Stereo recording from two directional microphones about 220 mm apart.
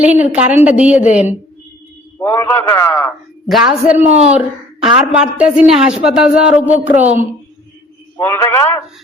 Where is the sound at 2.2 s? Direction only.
10° left (ahead or behind).